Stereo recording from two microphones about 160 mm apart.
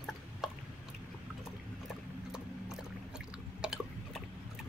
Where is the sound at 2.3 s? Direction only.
5° right (ahead or behind).